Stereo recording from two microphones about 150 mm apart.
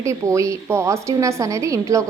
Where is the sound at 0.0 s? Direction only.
20° right (ahead or behind).